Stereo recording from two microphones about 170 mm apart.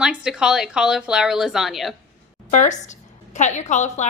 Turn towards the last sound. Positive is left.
turn(degrees=45)  # may be behind; listen again after turning